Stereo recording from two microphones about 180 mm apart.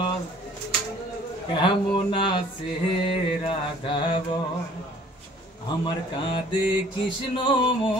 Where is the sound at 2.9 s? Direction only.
30° left (ahead or behind).